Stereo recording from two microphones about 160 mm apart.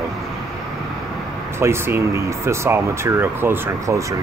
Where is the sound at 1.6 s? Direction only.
15° right (ahead or behind).